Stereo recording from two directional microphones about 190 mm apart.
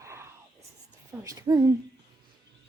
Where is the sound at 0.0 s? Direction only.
15° right (ahead or behind).